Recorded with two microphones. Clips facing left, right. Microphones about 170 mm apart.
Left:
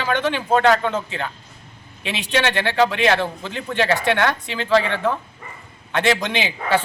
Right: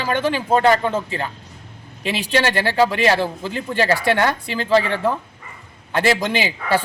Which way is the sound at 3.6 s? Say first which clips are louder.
Right 1 dB; 40° right (ahead or behind).